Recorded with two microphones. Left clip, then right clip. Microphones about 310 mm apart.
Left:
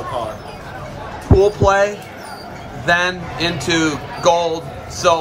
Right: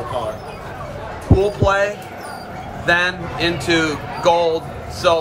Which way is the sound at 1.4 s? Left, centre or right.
Left.